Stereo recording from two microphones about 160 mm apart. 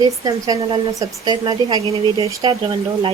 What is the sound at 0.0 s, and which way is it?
Speech, 20° right (ahead or behind).